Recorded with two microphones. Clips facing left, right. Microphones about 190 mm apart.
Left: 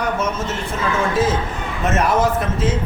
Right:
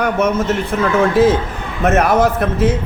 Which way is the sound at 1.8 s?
60° right (ahead or behind).